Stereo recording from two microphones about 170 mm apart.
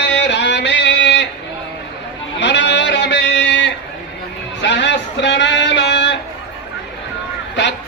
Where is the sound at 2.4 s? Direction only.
90° left.